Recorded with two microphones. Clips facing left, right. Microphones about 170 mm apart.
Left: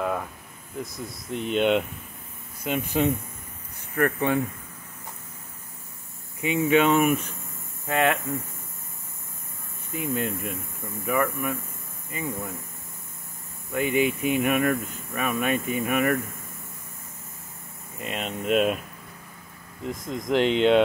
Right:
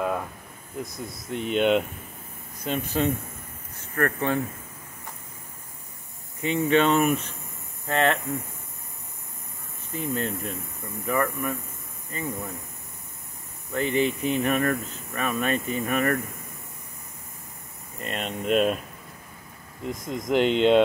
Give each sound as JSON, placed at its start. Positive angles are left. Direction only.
{"t": 0.9, "sound": "speech", "side_deg": 0}
{"t": 2.6, "sound": "speech", "side_deg": 10}
{"t": 6.6, "sound": "speech", "side_deg": 10}
{"t": 10.0, "sound": "speech", "side_deg": 0}
{"t": 13.7, "sound": "speech", "side_deg": 15}
{"t": 14.3, "sound": "speech", "side_deg": 0}
{"t": 17.9, "sound": "speech", "side_deg": 0}
{"t": 19.8, "sound": "speech", "side_deg": 0}